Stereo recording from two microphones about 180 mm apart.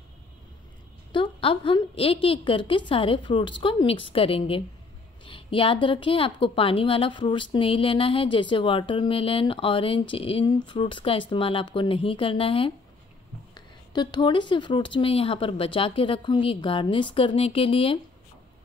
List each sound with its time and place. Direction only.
1.1 s a woman's voice: 30° left (ahead or behind)